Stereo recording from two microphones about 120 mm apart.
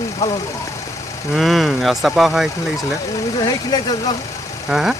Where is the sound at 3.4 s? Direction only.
35° left (ahead or behind).